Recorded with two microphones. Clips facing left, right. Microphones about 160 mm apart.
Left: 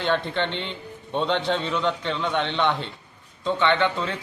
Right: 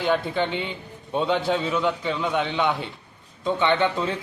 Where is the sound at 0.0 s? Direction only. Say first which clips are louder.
Right 1 dB; 10° right (ahead or behind).